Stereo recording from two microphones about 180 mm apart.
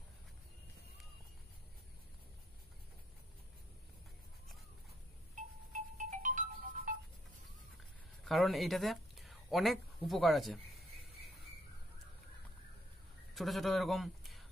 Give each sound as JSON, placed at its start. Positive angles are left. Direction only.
{"t": 5.9, "sound": "music", "side_deg": -45}
{"t": 8.2, "sound": "speech", "side_deg": 0}
{"t": 13.3, "sound": "speech", "side_deg": 0}